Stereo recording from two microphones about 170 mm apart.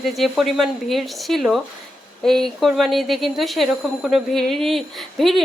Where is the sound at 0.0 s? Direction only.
Centre (ahead or behind).